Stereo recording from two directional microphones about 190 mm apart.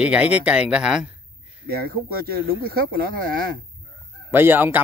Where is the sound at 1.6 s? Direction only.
55° right (ahead or behind).